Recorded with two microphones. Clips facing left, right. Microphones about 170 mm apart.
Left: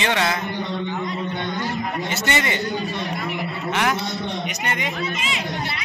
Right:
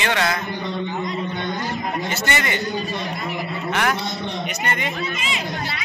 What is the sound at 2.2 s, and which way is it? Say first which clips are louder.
Speech: left 2 dB; 25° left (ahead or behind).